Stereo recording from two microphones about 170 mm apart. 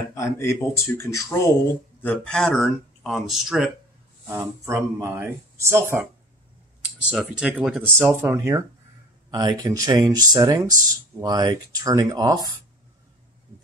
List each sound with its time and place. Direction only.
0.1 s speech: 15° left (ahead or behind); by 3.7 s centre (ahead or behind)
4.3 s speech: 15° right (ahead or behind)
7.8 s speech: 15° right (ahead or behind)